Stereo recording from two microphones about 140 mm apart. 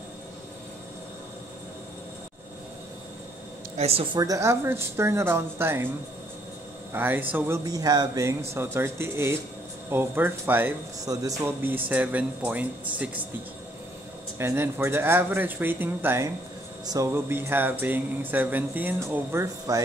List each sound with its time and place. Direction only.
3.7 s speech: 45° right (ahead or behind)
4.2 s speech: 25° right (ahead or behind)
6.9 s speech: 15° right (ahead or behind)
14.4 s speech: 20° right (ahead or behind)
16.8 s speech: 25° right (ahead or behind)